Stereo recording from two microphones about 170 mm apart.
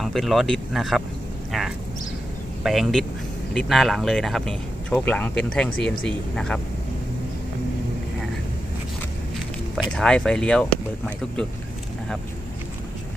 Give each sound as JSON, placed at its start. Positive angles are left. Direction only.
{"t": 0.0, "sound": "speech", "side_deg": 0}
{"t": 9.9, "sound": "speech", "side_deg": 5}